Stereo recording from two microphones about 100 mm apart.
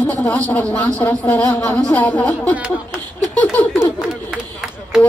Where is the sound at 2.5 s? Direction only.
10° right (ahead or behind).